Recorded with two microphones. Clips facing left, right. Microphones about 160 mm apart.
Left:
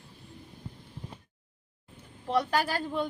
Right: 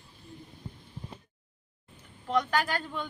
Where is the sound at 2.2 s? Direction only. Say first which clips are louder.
Left 1 dB; 30° left (ahead or behind).